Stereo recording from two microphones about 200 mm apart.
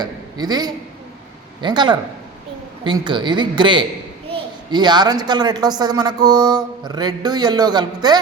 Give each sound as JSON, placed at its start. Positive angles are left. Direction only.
{"t": 0.0, "sound": "a woman's voice", "side_deg": -20}